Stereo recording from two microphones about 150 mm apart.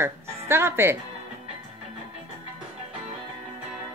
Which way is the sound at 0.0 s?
15° right (ahead or behind).